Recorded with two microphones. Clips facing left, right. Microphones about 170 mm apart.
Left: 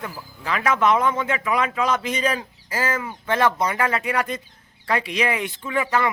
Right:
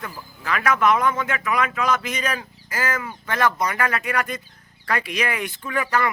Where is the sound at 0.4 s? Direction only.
25° left (ahead or behind).